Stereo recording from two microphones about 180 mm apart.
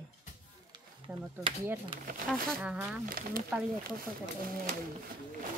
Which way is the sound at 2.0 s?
55° right (ahead or behind).